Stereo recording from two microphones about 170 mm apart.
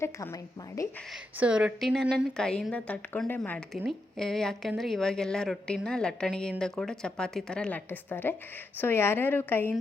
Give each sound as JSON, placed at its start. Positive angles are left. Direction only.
{"t": 0.0, "sound": "speech", "side_deg": 15}
{"t": 1.4, "sound": "a woman's voice", "side_deg": -5}